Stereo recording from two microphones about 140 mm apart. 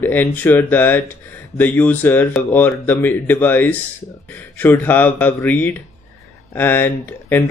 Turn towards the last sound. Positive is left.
turn(degrees=15)  # may be behind; listen again after turning